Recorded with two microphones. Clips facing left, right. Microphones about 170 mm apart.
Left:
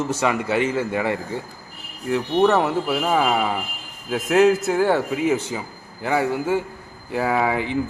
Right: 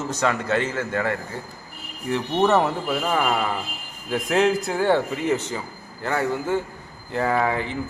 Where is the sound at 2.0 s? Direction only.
Centre (ahead or behind).